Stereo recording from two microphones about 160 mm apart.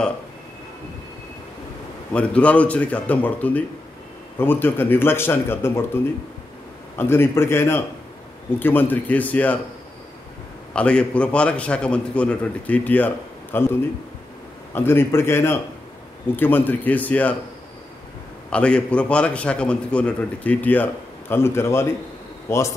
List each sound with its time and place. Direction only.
2.1 s a man's voice: 10° left (ahead or behind)
7.0 s a man's voice: 15° left (ahead or behind)
10.7 s a man's voice: 5° left (ahead or behind)
18.5 s a man's voice: 5° left (ahead or behind)